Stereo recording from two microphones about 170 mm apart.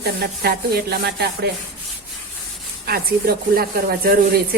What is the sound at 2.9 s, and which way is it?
Speech, 65° right (ahead or behind).